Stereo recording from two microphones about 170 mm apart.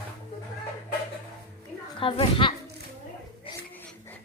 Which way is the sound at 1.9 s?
30° left (ahead or behind).